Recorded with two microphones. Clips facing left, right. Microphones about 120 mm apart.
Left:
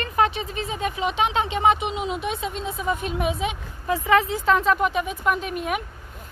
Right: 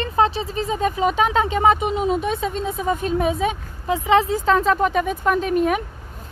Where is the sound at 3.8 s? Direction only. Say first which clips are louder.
Right 2 dB; 20° right (ahead or behind).